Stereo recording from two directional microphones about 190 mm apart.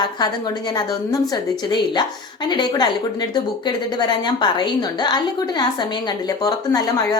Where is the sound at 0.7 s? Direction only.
20° left (ahead or behind).